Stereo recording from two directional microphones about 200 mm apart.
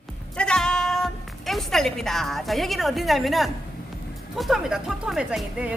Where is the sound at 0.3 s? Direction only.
5° left (ahead or behind).